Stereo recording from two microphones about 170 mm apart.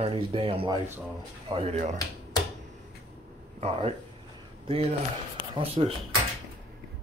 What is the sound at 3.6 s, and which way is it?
Speech, 35° right (ahead or behind).